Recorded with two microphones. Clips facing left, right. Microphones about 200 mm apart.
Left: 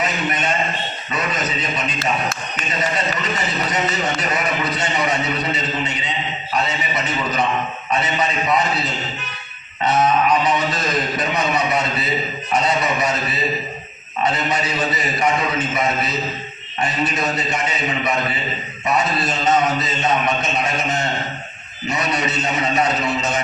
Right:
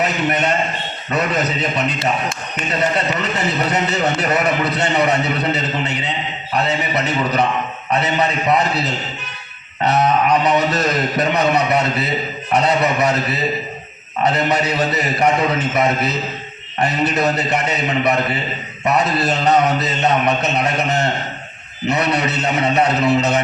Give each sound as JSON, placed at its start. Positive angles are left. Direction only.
{"t": 0.0, "sound": "a man's voice", "side_deg": -65}
{"t": 10.2, "sound": "a man's voice", "side_deg": -65}